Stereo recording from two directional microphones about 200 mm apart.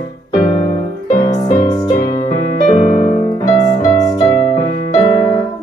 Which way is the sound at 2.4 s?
45° right (ahead or behind).